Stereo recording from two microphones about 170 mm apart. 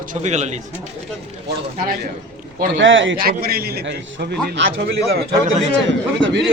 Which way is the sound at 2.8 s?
90° right.